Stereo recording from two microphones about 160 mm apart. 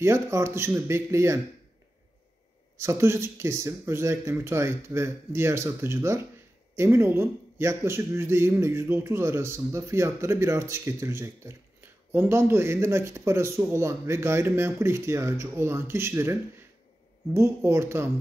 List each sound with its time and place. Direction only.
0.0 s a man's voice: 15° right (ahead or behind)
2.8 s a man's voice: 15° right (ahead or behind)
17.6 s a man's voice: 15° right (ahead or behind)